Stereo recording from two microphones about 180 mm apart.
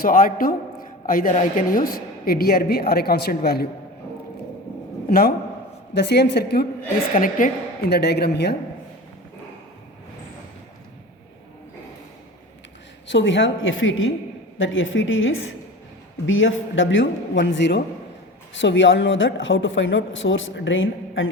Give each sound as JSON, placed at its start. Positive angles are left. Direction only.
{"t": 0.0, "sound": "a man's voice", "side_deg": 50}
{"t": 5.0, "sound": "speech", "side_deg": 55}
{"t": 5.9, "sound": "a woman's voice", "side_deg": 65}
{"t": 7.1, "sound": "a man's voice", "side_deg": 50}
{"t": 13.1, "sound": "a woman's voice", "side_deg": 90}
{"t": 18.5, "sound": "a woman's voice", "side_deg": 90}